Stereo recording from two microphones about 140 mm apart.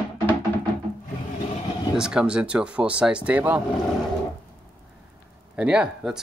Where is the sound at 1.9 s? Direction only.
5° right (ahead or behind).